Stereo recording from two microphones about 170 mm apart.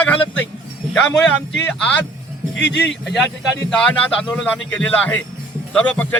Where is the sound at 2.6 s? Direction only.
90° left.